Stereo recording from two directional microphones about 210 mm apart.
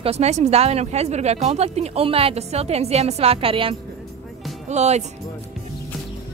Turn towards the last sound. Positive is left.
turn(degrees=-30)  # may be behind; listen again after turning